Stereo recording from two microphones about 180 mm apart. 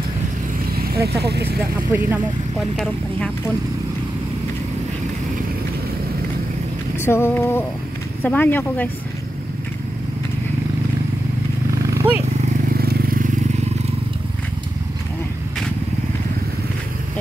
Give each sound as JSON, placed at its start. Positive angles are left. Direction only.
{"t": 0.7, "sound": "vehicle", "side_deg": -60}
{"t": 1.2, "sound": "speech", "side_deg": -65}
{"t": 1.9, "sound": "speech", "side_deg": -10}
{"t": 7.0, "sound": "speech", "side_deg": 15}
{"t": 11.9, "sound": "vehicle", "side_deg": -15}
{"t": 12.4, "sound": "vehicle", "side_deg": -55}